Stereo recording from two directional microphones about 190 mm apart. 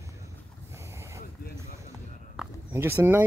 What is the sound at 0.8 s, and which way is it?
Boat, 15° right (ahead or behind).